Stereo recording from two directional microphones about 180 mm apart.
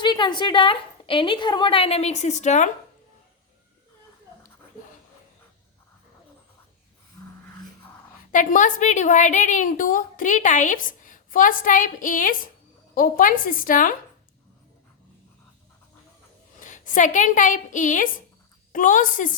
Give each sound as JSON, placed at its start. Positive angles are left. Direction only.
{"t": 0.0, "sound": "a woman's voice", "side_deg": 25}
{"t": 8.3, "sound": "a woman's voice", "side_deg": 45}
{"t": 16.6, "sound": "a woman's voice", "side_deg": 45}